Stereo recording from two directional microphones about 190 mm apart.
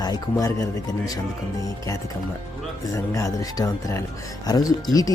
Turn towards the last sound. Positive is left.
turn(degrees=20)  # may be behind; listen again after turning